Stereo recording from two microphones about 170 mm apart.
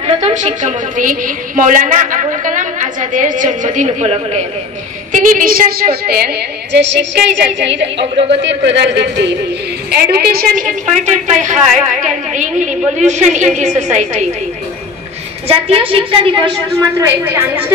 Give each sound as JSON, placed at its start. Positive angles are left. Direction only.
{"t": 0.0, "sound": "a woman's voice", "side_deg": -40}
{"t": 5.1, "sound": "a woman's voice", "side_deg": -50}
{"t": 8.0, "sound": "a woman's voice", "side_deg": -35}
{"t": 8.4, "sound": "a man's voice", "side_deg": -90}
{"t": 9.8, "sound": "a woman's voice", "side_deg": -65}
{"t": 15.4, "sound": "a woman's voice", "side_deg": -35}
{"t": 17.0, "sound": "a woman's voice", "side_deg": -10}